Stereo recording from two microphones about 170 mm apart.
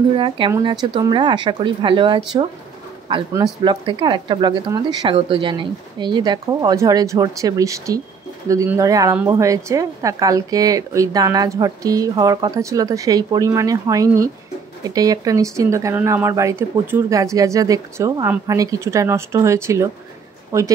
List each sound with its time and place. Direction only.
0.5 s speech: 25° right (ahead or behind)
3.6 s speech: 25° right (ahead or behind)